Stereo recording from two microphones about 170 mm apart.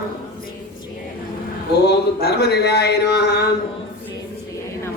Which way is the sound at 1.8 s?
70° left (ahead or behind).